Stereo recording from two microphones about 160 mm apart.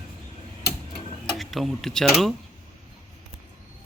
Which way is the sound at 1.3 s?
Centre (ahead or behind).